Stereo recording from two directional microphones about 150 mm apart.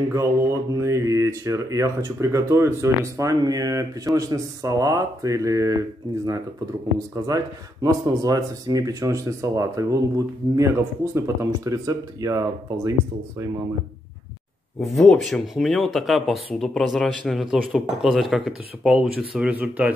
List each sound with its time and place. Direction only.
0.1 s speech: 20° right (ahead or behind)
14.8 s speech: centre (ahead or behind)